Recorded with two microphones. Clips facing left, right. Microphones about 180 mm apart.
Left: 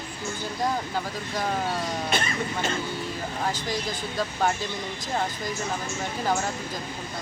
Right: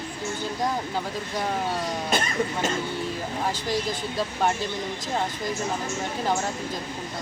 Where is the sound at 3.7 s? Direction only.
Centre (ahead or behind).